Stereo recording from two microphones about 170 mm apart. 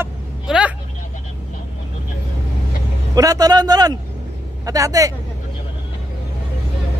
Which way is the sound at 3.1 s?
20° right (ahead or behind).